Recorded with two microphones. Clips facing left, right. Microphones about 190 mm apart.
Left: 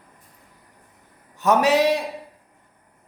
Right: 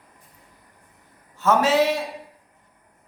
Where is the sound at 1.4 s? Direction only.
15° left (ahead or behind).